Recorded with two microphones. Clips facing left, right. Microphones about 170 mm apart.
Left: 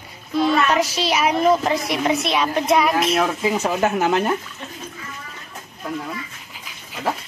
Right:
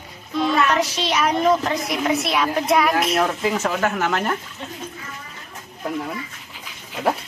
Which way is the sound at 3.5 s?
20° left (ahead or behind).